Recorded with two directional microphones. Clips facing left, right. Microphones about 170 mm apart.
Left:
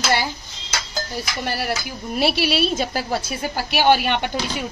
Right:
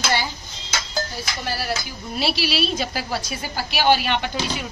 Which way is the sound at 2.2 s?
55° left (ahead or behind).